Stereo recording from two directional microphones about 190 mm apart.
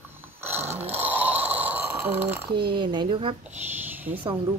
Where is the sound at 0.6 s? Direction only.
35° right (ahead or behind).